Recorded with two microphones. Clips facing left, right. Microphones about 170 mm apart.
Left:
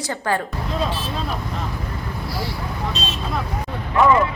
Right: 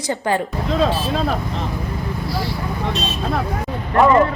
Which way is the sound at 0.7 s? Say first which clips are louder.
Right 7 dB; 90° right.